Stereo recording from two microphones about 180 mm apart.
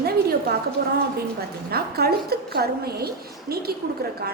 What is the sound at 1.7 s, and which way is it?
A woman's voice, 60° right (ahead or behind).